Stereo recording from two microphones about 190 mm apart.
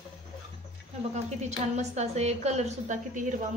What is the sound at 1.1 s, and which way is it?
A woman's voice, 35° right (ahead or behind).